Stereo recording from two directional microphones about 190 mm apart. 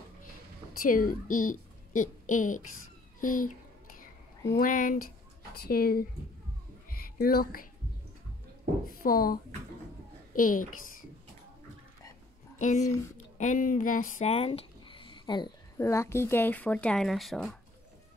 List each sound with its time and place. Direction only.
0.8 s a woman's voice: 45° left (ahead or behind)
4.6 s a child's voice: 45° left (ahead or behind)
6.9 s a sound: 50° left (ahead or behind)
8.8 s a sound: 50° left (ahead or behind)
10.3 s a child's voice: 45° left (ahead or behind)
12.5 s a woman's voice: 40° left (ahead or behind); by 17.6 s centre (ahead or behind)